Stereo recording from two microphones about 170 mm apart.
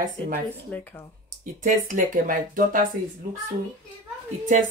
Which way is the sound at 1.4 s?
50° right (ahead or behind).